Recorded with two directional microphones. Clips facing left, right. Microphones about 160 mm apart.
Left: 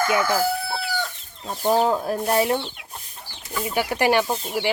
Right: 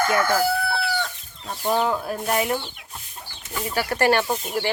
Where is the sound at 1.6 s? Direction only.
30° left (ahead or behind).